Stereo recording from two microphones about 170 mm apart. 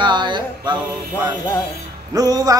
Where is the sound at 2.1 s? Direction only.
20° right (ahead or behind).